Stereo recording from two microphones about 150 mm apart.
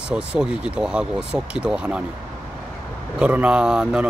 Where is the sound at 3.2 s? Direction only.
10° right (ahead or behind).